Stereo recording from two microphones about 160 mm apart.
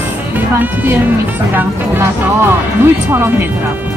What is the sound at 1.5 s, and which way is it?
Speech, 15° right (ahead or behind).